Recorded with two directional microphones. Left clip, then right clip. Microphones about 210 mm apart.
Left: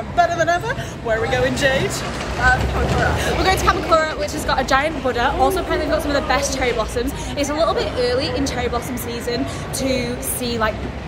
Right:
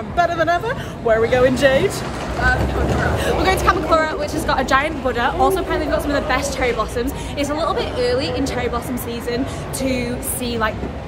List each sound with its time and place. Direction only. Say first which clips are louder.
0.2 s speech: even; 20° right (ahead or behind)
3.2 s a woman's voice: even; 20° right (ahead or behind)